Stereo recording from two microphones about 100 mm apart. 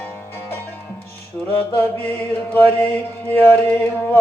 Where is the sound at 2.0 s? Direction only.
20° left (ahead or behind).